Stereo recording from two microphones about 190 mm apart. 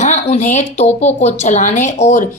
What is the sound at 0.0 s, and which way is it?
Speech, 35° left (ahead or behind).